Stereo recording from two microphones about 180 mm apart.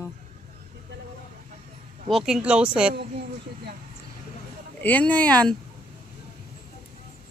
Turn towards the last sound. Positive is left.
turn(degrees=5)  # may be behind; listen again after turning